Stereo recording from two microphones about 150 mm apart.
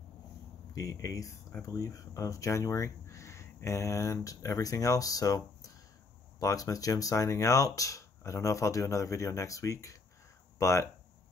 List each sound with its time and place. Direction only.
0.7 s speech: 20° left (ahead or behind)